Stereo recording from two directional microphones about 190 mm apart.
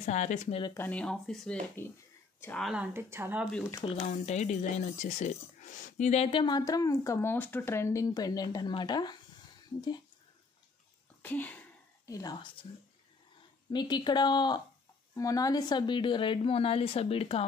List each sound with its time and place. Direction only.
0.0 s speech: 40° left (ahead or behind)
0.7 s speech: 5° left (ahead or behind)
2.7 s a woman's voice: 10° right (ahead or behind)
4.0 s speech: 40° left (ahead or behind); by 9.2 s 20° left (ahead or behind)
11.2 s speech: 10° left (ahead or behind)
12.1 s speech: 20° left (ahead or behind)
13.7 s speech: 25° left (ahead or behind)